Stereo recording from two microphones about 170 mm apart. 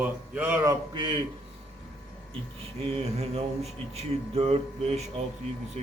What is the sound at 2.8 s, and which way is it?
Speech, 35° right (ahead or behind).